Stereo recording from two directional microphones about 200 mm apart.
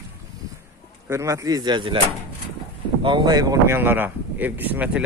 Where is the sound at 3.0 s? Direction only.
25° right (ahead or behind).